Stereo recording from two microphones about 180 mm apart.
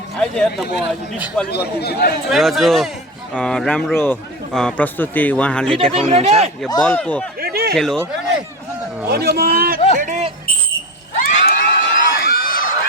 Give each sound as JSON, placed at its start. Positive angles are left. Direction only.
{"t": 0.2, "sound": "a man's voice", "side_deg": 5}
{"t": 1.5, "sound": "a man's voice", "side_deg": 65}
{"t": 2.3, "sound": "a man's voice", "side_deg": 0}
{"t": 5.9, "sound": "speech", "side_deg": -35}
{"t": 6.8, "sound": "speech", "side_deg": 10}
{"t": 7.4, "sound": "a sound", "side_deg": -60}
{"t": 7.8, "sound": "a man's voice", "side_deg": 0}
{"t": 9.0, "sound": "speech", "side_deg": -65}
{"t": 10.0, "sound": "smoke detector", "side_deg": -40}
{"t": 11.2, "sound": "crowd", "side_deg": 45}